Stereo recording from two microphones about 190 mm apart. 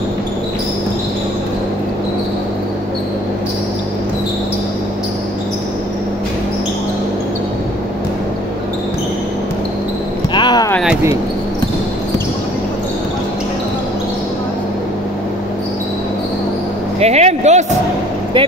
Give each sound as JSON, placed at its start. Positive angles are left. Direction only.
{"t": 10.3, "sound": "basketball bounce", "side_deg": 20}
{"t": 17.0, "sound": "music", "side_deg": -35}